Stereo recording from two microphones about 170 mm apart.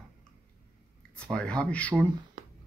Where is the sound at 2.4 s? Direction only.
55° right (ahead or behind).